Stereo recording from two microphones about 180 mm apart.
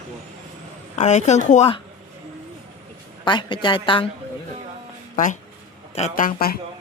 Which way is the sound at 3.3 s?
25° left (ahead or behind).